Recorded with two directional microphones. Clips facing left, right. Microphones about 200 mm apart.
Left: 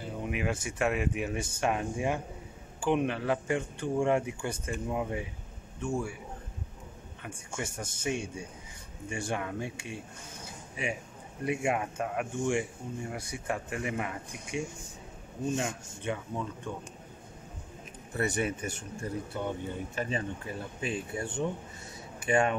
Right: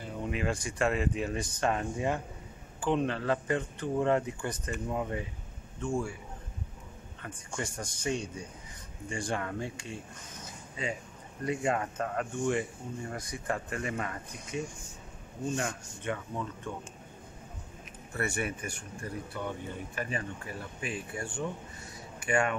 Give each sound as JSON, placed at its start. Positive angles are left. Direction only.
{"t": 0.2, "sound": "a sound", "side_deg": 10}
{"t": 0.7, "sound": "speech", "side_deg": 5}
{"t": 7.2, "sound": "speech", "side_deg": 10}
{"t": 10.4, "sound": "a sound", "side_deg": 10}
{"t": 11.4, "sound": "speech", "side_deg": 10}
{"t": 18.1, "sound": "speech", "side_deg": 20}